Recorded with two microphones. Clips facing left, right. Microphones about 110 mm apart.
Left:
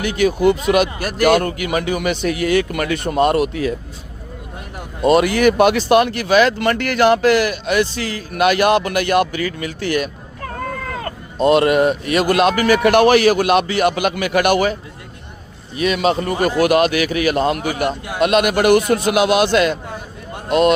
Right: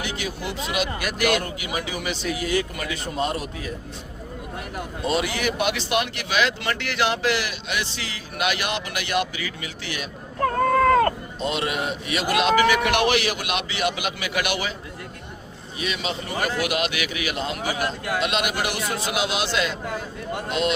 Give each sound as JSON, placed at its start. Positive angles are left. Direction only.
{"t": 0.0, "sound": "speech", "side_deg": 55}
{"t": 5.0, "sound": "speech", "side_deg": 55}
{"t": 11.3, "sound": "speech", "side_deg": 55}
{"t": 15.8, "sound": "speech", "side_deg": 55}